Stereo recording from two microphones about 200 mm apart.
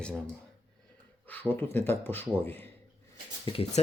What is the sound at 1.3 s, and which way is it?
Speech, 10° left (ahead or behind).